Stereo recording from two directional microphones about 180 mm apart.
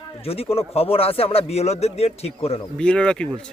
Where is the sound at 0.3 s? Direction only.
35° left (ahead or behind).